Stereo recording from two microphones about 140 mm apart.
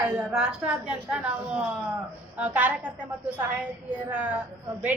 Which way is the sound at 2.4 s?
10° right (ahead or behind).